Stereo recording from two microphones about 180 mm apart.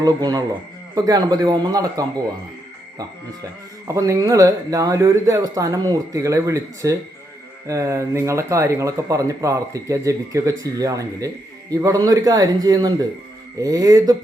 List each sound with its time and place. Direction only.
0.0 s speech: 20° right (ahead or behind)
3.8 s speech: 15° right (ahead or behind)